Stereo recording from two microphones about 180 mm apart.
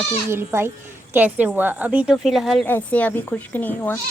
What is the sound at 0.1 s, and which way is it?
A woman's voice, 15° right (ahead or behind).